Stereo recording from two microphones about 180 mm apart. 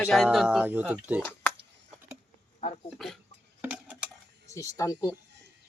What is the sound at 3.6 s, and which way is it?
Dishes, 10° right (ahead or behind).